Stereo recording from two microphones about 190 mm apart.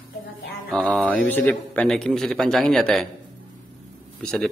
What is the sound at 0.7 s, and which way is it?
Speech, 5° left (ahead or behind).